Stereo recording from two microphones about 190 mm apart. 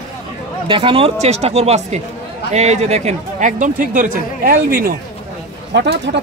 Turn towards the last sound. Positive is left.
turn(degrees=-60)  # may be behind; listen again after turning